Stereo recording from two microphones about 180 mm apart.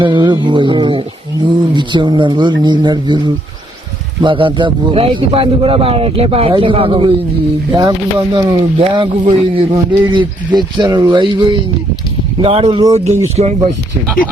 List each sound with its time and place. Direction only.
0.0 s a man's voice: 25° right (ahead or behind)
4.2 s a man's voice: 25° right (ahead or behind)